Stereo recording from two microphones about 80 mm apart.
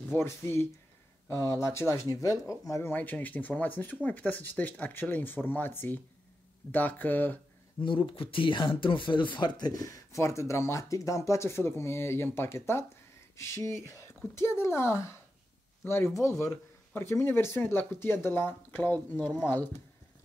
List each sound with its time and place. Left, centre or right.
0.1 s speech: left
2.9 s speech: left
7.8 s speech: left